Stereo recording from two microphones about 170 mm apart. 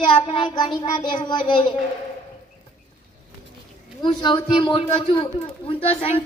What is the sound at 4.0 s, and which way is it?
Speech, 25° left (ahead or behind).